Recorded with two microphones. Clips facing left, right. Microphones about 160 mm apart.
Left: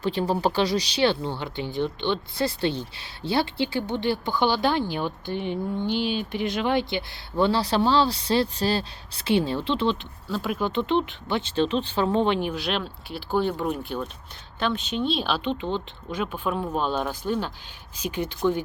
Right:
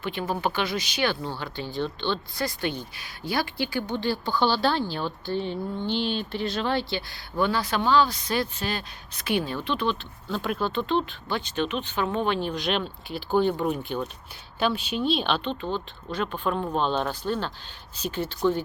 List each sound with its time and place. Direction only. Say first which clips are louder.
0.0 s speech: left 4 dB; 35° left (ahead or behind)
10.3 s speech: left 1 dB; 5° left (ahead or behind)
10.6 s speech: left 3 dB; 20° left (ahead or behind)
12.5 s speech: right 1 dB; 5° left (ahead or behind)
15.4 s speech: left 2 dB; 15° left (ahead or behind)